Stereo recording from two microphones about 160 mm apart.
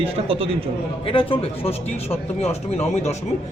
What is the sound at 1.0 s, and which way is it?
A man's voice, 35° left (ahead or behind).